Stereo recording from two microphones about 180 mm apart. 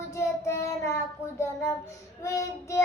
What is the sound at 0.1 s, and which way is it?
Child singing, 15° left (ahead or behind).